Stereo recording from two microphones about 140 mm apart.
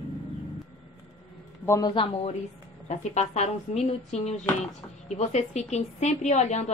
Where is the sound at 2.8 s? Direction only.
55° left (ahead or behind).